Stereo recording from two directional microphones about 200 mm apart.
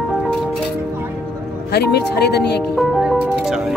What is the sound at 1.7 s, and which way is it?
Speech, 55° left (ahead or behind).